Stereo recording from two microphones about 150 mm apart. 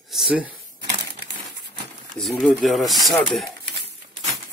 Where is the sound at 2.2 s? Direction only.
5° left (ahead or behind).